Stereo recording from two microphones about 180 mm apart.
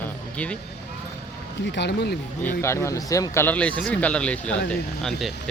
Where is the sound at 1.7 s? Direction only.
70° left (ahead or behind).